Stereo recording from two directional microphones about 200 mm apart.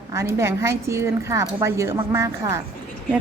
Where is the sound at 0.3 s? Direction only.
15° right (ahead or behind).